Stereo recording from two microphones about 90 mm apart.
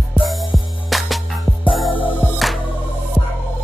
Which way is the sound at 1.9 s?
70° left (ahead or behind).